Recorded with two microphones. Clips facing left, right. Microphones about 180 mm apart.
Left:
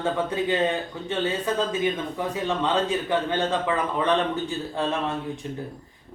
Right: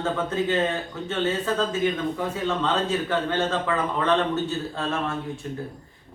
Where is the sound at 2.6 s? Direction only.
15° left (ahead or behind).